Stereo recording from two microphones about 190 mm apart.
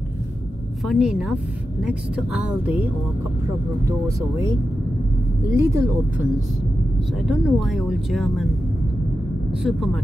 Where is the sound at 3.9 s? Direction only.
15° right (ahead or behind).